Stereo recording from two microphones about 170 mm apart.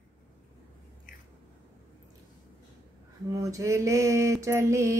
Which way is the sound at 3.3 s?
20° right (ahead or behind).